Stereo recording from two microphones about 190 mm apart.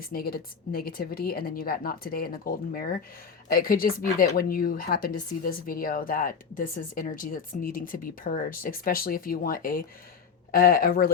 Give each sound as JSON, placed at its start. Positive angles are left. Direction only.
{"t": 0.0, "sound": "speech", "side_deg": 50}